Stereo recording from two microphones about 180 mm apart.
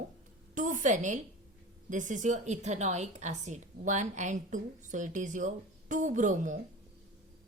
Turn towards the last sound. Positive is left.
turn(degrees=-45)  # may be behind; listen again after turning